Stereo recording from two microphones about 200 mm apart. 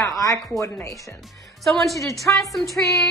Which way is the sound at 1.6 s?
Centre (ahead or behind).